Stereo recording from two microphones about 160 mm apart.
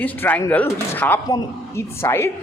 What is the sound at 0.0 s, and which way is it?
A man's voice, 10° left (ahead or behind).